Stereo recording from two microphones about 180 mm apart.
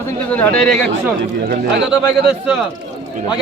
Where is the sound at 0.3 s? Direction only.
10° left (ahead or behind).